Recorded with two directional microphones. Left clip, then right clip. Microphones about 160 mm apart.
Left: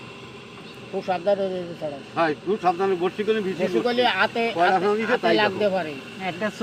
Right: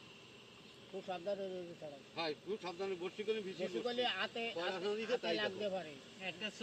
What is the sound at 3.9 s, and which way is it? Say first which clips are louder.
Speech: left 17 dB; 45° right (ahead or behind).